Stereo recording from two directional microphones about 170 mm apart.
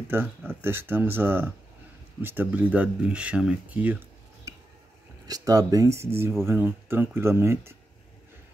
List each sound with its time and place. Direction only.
0.5 s speech: 15° right (ahead or behind)
5.2 s speech: 20° right (ahead or behind)